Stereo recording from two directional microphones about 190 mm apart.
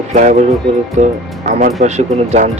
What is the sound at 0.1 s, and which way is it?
Speech, 40° right (ahead or behind).